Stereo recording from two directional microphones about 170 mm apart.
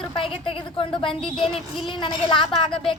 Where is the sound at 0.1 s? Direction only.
30° left (ahead or behind).